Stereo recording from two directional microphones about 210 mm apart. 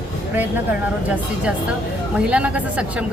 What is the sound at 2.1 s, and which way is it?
Speech, 5° right (ahead or behind).